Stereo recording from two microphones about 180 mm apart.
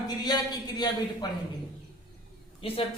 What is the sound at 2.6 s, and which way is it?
Speech, 30° left (ahead or behind).